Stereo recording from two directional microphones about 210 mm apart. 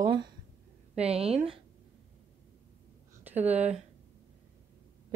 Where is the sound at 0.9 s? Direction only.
30° right (ahead or behind).